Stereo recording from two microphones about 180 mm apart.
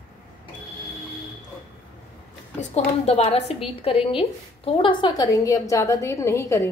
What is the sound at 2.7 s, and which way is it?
A woman's voice, 40° left (ahead or behind).